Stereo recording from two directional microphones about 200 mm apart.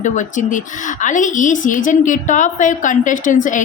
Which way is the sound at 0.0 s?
40° left (ahead or behind).